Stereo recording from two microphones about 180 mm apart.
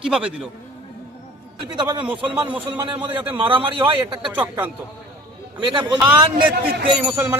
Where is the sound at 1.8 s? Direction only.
25° right (ahead or behind).